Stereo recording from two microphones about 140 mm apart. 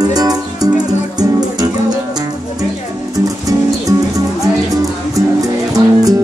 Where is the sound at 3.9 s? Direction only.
25° right (ahead or behind).